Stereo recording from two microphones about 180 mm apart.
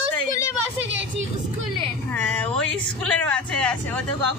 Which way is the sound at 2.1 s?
10° left (ahead or behind).